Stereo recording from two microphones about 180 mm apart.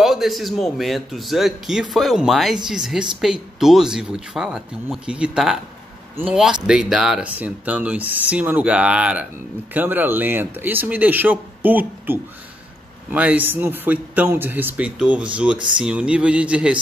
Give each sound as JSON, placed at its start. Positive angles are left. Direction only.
{"t": 0.0, "sound": "a man's voice", "side_deg": 0}